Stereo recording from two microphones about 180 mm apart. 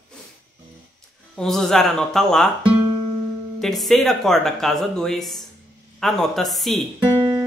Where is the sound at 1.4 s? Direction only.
Centre (ahead or behind).